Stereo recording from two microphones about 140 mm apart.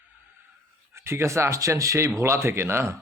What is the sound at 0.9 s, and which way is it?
Speech, 20° right (ahead or behind).